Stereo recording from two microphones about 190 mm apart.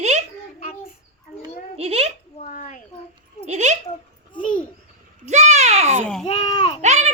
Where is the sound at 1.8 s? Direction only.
30° right (ahead or behind).